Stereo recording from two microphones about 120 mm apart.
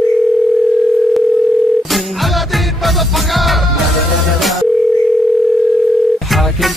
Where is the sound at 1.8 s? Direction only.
Centre (ahead or behind).